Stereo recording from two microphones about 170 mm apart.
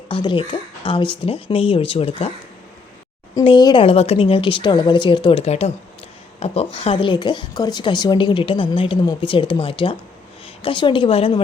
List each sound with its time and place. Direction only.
0.1 s speech: 30° left (ahead or behind)
3.3 s a woman's voice: 25° left (ahead or behind)